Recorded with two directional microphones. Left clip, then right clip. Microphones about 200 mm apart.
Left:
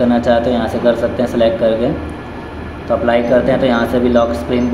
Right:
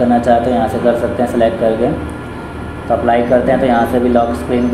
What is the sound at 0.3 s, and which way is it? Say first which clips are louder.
A man's voice: right 2 dB; centre (ahead or behind).